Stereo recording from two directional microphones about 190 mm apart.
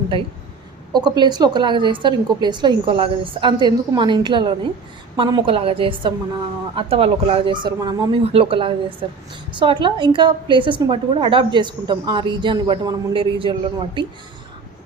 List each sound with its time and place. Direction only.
0.9 s a woman's voice: 20° right (ahead or behind)